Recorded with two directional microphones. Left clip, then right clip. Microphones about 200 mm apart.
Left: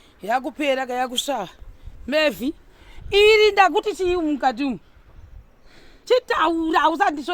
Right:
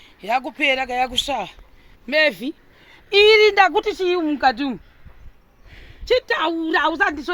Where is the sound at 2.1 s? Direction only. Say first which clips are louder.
Right 2 dB; 55° left (ahead or behind).